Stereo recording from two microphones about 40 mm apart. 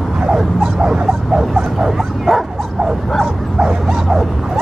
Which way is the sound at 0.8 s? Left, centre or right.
Centre.